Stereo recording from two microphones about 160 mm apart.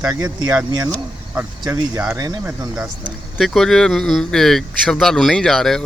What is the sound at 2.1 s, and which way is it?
Speech, 25° right (ahead or behind).